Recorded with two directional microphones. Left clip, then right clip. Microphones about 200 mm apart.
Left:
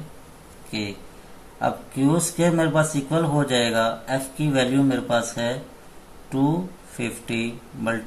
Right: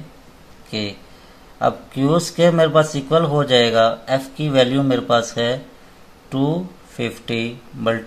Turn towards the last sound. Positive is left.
turn(degrees=-55)  # may be behind; listen again after turning